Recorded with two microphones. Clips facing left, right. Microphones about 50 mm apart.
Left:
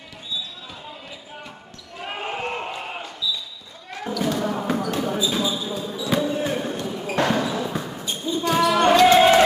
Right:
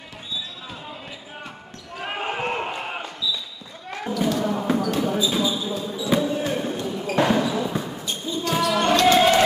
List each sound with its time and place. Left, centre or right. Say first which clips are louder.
2.0 s basketball bounce: right 2 dB; centre
4.3 s basketball bounce: right 1 dB; centre